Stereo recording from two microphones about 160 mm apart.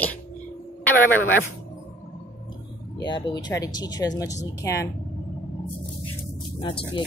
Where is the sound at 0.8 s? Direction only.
10° left (ahead or behind).